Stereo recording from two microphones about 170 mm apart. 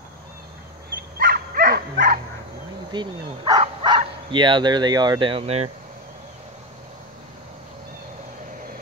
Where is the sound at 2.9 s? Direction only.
25° right (ahead or behind).